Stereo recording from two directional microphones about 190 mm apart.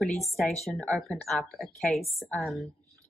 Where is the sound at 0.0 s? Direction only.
Centre (ahead or behind).